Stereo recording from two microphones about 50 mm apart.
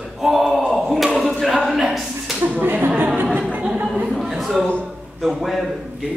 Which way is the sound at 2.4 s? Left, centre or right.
Right.